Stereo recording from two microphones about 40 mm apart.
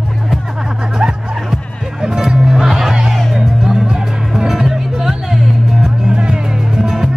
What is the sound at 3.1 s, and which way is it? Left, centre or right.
Music, centre.